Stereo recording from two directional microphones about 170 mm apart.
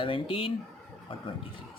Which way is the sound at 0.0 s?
30° left (ahead or behind).